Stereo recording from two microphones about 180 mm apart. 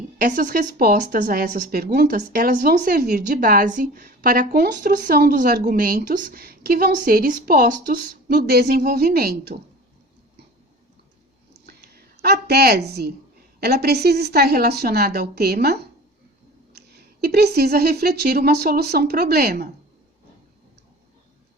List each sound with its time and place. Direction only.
0.2 s speech: 50° right (ahead or behind)
12.2 s a woman's voice: 60° right (ahead or behind)